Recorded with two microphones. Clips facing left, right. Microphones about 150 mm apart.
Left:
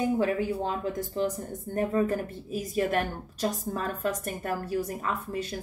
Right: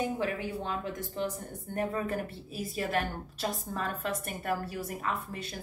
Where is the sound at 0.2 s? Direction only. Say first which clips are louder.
Left 6 dB; 35° left (ahead or behind).